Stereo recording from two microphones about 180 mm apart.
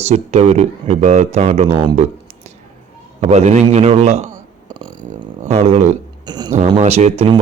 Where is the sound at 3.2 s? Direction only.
40° right (ahead or behind).